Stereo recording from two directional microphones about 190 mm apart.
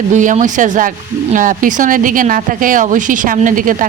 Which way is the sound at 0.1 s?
40° right (ahead or behind).